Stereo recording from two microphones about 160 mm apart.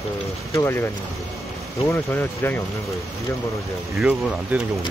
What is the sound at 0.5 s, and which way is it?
Speech, 20° left (ahead or behind).